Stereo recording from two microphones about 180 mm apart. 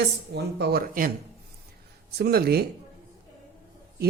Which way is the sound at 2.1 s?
60° right (ahead or behind).